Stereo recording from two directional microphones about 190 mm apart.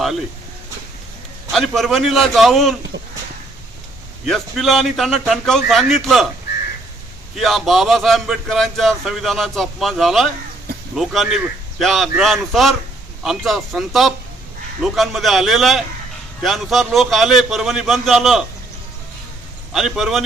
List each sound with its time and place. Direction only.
1.5 s speech: centre (ahead or behind)
2.9 s speech: 65° right (ahead or behind)
4.3 s speech: centre (ahead or behind)
7.3 s speech: centre (ahead or behind)
19.7 s speech: centre (ahead or behind)